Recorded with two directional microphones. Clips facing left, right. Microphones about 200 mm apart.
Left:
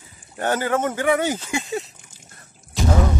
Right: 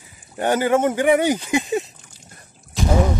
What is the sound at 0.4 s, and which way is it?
A man's voice, 15° right (ahead or behind).